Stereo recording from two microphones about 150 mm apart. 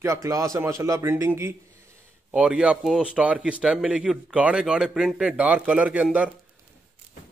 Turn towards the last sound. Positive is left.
turn(degrees=-10)  # may be behind; listen again after turning